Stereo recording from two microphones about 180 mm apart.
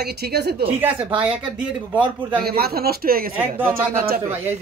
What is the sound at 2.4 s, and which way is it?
Speech, 60° right (ahead or behind).